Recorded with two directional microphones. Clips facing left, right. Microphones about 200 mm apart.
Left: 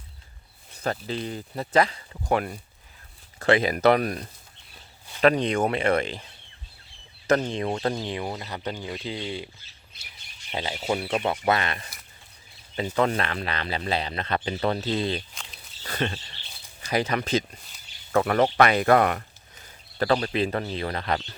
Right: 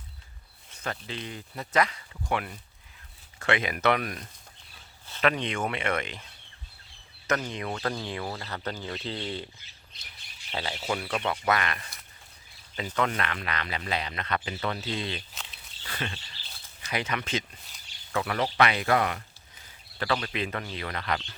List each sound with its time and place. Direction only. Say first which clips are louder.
0.7 s speech: left 7 dB; 35° left (ahead or behind)
7.3 s speech: left 7 dB; 30° left (ahead or behind); by 9.5 s 10° left (ahead or behind)
10.5 s speech: left 4 dB; 20° left (ahead or behind)
13.0 s speech: left 4 dB; 30° left (ahead or behind)
15.8 s a sound: left 7 dB; 40° left (ahead or behind)
16.8 s speech: left 6 dB; 35° left (ahead or behind); by 19.2 s 55° left (ahead or behind)
19.6 s speech: left 7 dB; 40° left (ahead or behind)